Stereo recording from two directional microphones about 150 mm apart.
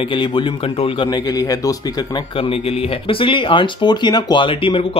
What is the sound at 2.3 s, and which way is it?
Speech, 40° left (ahead or behind).